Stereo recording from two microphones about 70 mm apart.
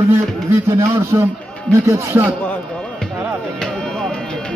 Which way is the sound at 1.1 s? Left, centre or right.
Right.